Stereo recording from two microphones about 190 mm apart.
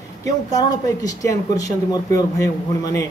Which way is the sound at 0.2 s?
20° left (ahead or behind).